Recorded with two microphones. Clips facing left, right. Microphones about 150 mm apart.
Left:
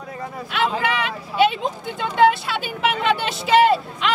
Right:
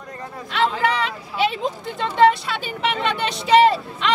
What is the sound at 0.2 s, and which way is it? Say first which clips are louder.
Speech: right 1 dB; 5° left (ahead or behind).